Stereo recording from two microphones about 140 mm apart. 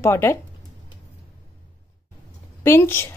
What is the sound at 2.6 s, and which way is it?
Speech, 15° left (ahead or behind).